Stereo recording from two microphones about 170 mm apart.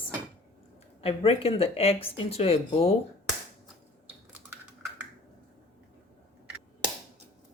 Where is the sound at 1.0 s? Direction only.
35° left (ahead or behind).